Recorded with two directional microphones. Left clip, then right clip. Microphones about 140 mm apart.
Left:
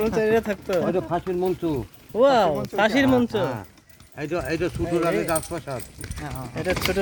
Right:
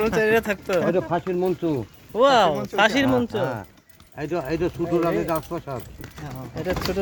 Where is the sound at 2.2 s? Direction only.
45° left (ahead or behind).